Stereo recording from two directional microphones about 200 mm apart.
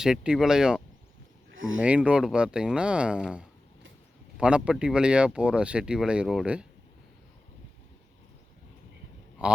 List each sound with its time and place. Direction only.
0.0 s speech: 5° right (ahead or behind)
1.5 s speech: 80° right
1.8 s speech: 5° right (ahead or behind)